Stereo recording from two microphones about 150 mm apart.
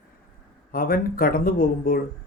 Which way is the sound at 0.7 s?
75° left (ahead or behind).